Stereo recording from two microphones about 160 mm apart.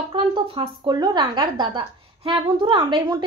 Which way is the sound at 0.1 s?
30° right (ahead or behind).